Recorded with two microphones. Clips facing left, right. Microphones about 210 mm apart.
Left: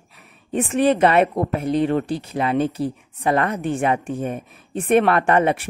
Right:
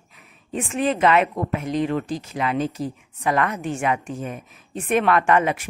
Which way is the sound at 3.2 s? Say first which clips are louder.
Left 2 dB; 30° left (ahead or behind).